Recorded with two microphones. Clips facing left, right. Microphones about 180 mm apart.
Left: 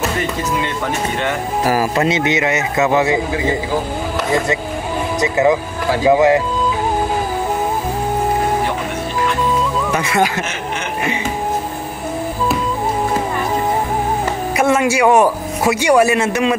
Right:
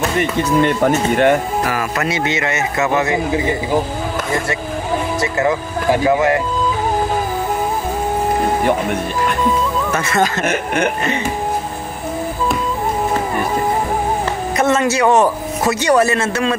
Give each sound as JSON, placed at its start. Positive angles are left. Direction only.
{"t": 0.6, "sound": "speech", "side_deg": -45}
{"t": 1.6, "sound": "speech", "side_deg": 35}
{"t": 5.2, "sound": "speech", "side_deg": 20}
{"t": 9.9, "sound": "a man's voice", "side_deg": 10}
{"t": 10.4, "sound": "speech", "side_deg": -60}
{"t": 14.6, "sound": "a man's voice", "side_deg": 10}